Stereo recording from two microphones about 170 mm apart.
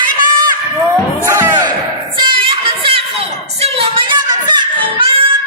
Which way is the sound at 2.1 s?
30° right (ahead or behind).